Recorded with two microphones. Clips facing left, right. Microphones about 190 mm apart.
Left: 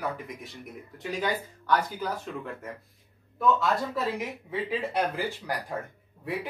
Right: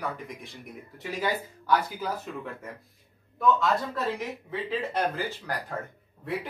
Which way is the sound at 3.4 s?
5° left (ahead or behind).